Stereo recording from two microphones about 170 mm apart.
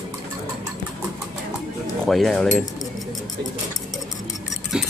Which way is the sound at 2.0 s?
Centre (ahead or behind).